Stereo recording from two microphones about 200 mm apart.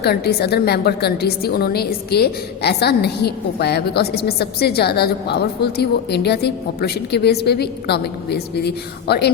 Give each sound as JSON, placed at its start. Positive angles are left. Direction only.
{"t": 0.0, "sound": "a woman's voice", "side_deg": 50}